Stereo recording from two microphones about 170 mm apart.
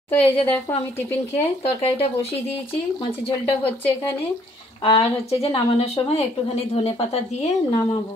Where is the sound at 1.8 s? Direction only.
35° left (ahead or behind).